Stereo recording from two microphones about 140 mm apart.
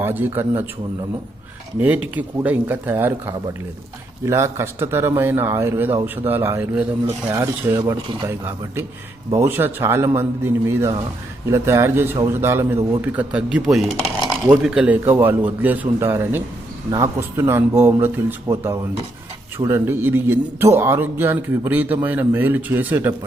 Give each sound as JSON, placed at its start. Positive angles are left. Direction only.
{"t": 0.0, "sound": "speech", "side_deg": -15}
{"t": 2.1, "sound": "speech", "side_deg": -10}